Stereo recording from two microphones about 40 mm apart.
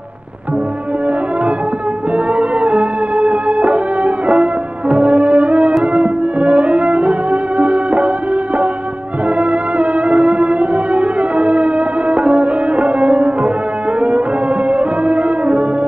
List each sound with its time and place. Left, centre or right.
2.1 s music: right
9.4 s music: right